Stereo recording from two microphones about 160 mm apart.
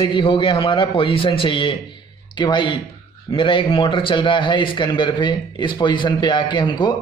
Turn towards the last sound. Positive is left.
turn(degrees=30)  # may be behind; listen again after turning